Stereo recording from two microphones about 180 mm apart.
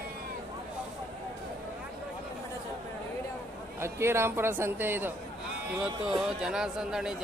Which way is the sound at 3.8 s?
15° right (ahead or behind).